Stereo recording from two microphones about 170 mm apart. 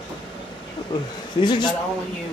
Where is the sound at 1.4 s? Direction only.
25° left (ahead or behind).